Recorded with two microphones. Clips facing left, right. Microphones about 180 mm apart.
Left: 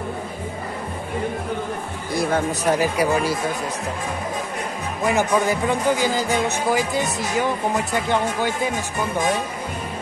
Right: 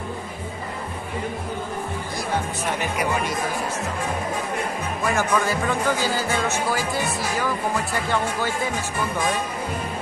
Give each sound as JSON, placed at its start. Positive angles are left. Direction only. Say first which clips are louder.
{"t": 2.6, "sound": "speech", "louder": "left 6 dB", "side_deg": 35}
{"t": 5.0, "sound": "speech", "louder": "left 3 dB", "side_deg": 20}